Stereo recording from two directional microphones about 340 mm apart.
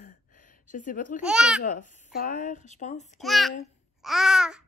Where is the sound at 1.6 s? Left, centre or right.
Left.